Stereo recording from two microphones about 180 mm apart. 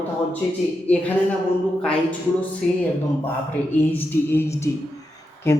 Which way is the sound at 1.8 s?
5° left (ahead or behind).